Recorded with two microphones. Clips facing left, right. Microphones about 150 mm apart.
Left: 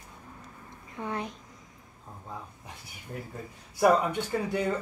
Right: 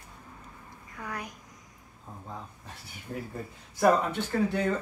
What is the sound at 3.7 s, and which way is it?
Speech, 10° left (ahead or behind).